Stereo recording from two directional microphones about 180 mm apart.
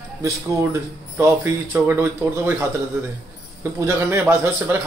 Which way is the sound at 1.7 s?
10° right (ahead or behind).